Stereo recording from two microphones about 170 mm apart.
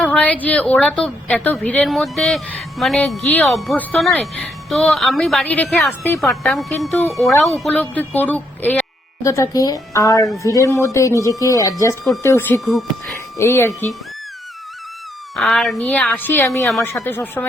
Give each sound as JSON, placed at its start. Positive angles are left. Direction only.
{"t": 0.0, "sound": "a woman's voice", "side_deg": 5}
{"t": 12.6, "sound": "a woman's voice", "side_deg": 0}
{"t": 13.3, "sound": "speech", "side_deg": 15}
{"t": 15.4, "sound": "a woman's voice", "side_deg": 0}